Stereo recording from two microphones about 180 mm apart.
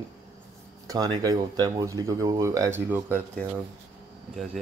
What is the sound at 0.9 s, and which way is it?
Speech, 20° right (ahead or behind).